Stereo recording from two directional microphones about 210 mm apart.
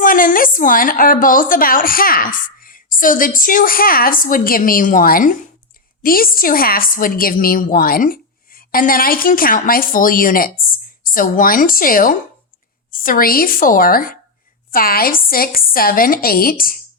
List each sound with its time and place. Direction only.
0.0 s a woman's voice: 40° left (ahead or behind)